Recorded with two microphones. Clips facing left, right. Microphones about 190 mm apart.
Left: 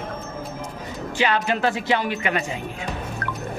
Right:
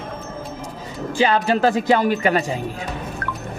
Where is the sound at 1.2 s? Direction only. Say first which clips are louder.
Right 4 dB; 35° right (ahead or behind).